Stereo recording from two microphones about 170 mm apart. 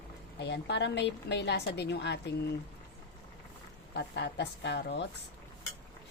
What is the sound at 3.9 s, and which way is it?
Speech, 90° left.